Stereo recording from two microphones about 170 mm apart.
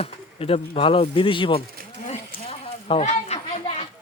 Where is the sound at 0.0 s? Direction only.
35° left (ahead or behind).